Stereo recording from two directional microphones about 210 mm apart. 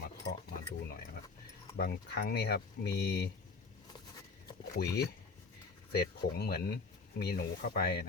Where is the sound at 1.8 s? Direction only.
50° left (ahead or behind).